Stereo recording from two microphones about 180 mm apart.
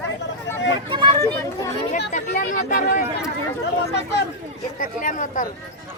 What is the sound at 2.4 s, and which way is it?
Chatter, 45° left (ahead or behind).